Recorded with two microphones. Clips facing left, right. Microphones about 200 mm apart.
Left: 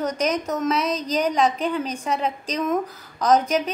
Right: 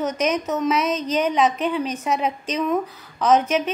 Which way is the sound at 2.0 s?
10° right (ahead or behind).